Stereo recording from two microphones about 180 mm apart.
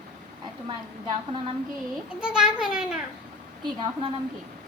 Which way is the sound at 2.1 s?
5° right (ahead or behind).